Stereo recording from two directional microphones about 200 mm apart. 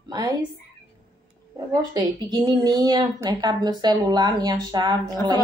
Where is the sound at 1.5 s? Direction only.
20° right (ahead or behind).